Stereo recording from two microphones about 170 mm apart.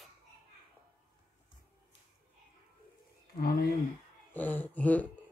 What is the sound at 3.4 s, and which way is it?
Speech, 60° left (ahead or behind).